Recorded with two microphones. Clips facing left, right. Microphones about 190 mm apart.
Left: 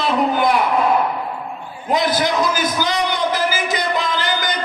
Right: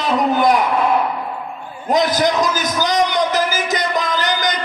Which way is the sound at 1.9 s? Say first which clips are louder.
Right 2 dB; 45° right (ahead or behind).